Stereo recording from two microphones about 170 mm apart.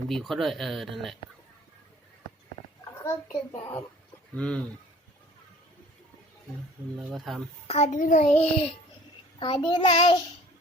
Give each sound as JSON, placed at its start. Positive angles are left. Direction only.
{"t": 0.1, "sound": "speech", "side_deg": 0}
{"t": 4.4, "sound": "speech", "side_deg": 5}
{"t": 7.0, "sound": "speech", "side_deg": 0}
{"t": 7.7, "sound": "a child's voice", "side_deg": 45}
{"t": 9.4, "sound": "child singing", "side_deg": 30}